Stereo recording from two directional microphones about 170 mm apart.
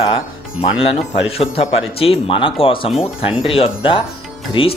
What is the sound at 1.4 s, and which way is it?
Speech, 35° left (ahead or behind).